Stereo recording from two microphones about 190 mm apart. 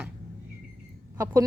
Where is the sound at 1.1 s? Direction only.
15° right (ahead or behind).